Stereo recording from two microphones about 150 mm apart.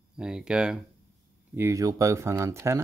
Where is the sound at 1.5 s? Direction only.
15° right (ahead or behind).